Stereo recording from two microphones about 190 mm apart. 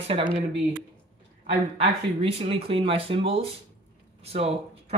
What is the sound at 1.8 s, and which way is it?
Speech, 30° right (ahead or behind).